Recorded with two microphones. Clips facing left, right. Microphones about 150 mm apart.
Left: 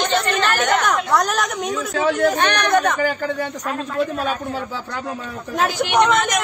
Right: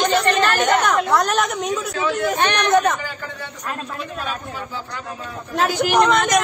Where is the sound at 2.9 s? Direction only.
75° left (ahead or behind).